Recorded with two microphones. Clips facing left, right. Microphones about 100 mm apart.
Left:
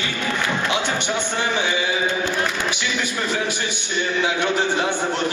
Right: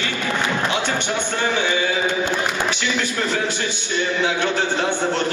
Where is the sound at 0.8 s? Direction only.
15° left (ahead or behind).